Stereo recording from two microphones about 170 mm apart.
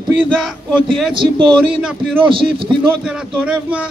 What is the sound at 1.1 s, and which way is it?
Speech, 30° right (ahead or behind).